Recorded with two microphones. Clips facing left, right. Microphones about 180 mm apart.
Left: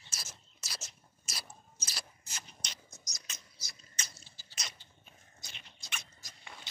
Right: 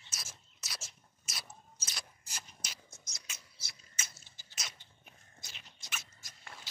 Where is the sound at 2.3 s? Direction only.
5° right (ahead or behind).